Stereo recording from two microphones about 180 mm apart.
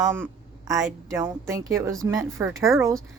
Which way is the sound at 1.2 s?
15° right (ahead or behind).